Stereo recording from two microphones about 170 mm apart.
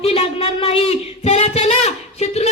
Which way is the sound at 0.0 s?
35° left (ahead or behind).